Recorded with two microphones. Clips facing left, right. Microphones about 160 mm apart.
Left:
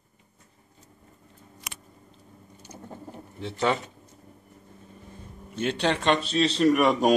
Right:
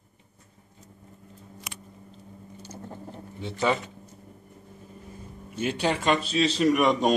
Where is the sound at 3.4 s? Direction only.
Centre (ahead or behind).